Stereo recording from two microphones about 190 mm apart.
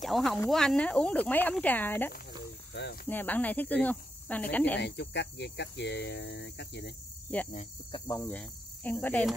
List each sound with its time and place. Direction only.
0.0 s speech: centre (ahead or behind)
2.7 s cricket: 65° left (ahead or behind)
3.1 s speech: 10° left (ahead or behind)
4.7 s speech: 65° left (ahead or behind)
7.3 s speech: 5° left (ahead or behind)